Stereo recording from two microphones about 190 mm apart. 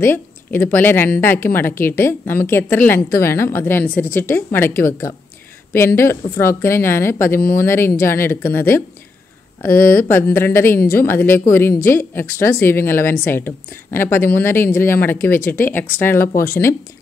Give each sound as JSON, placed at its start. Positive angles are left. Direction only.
{"t": 0.0, "sound": "a woman's voice", "side_deg": 10}
{"t": 10.8, "sound": "a woman's voice", "side_deg": 50}
{"t": 11.1, "sound": "a woman's voice", "side_deg": 10}